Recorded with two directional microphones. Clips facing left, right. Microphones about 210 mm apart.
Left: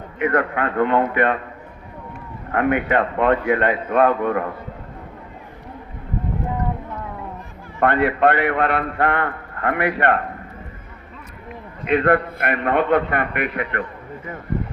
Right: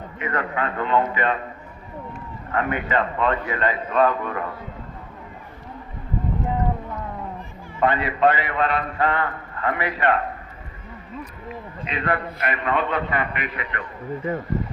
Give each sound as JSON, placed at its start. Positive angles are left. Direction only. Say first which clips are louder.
{"t": 0.2, "sound": "a man's voice", "louder": "left 6 dB", "side_deg": 60}
{"t": 2.5, "sound": "a man's voice", "louder": "left 5 dB", "side_deg": 60}
{"t": 7.8, "sound": "a man's voice", "louder": "left 3 dB", "side_deg": 60}
{"t": 11.9, "sound": "a man's voice", "louder": "left 9 dB", "side_deg": 55}